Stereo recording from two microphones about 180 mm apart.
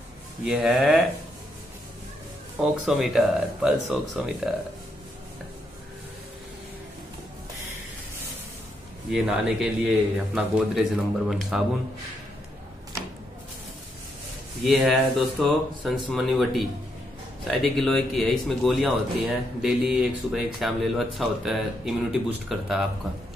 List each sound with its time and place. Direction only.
0.5 s speech: 5° right (ahead or behind)
2.6 s speech: centre (ahead or behind)
9.1 s speech: centre (ahead or behind)
14.6 s speech: centre (ahead or behind)